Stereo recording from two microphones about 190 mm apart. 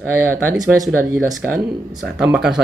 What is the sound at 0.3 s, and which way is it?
Speech, 15° right (ahead or behind).